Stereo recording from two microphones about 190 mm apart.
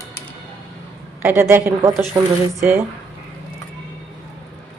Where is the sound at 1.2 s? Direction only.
10° right (ahead or behind).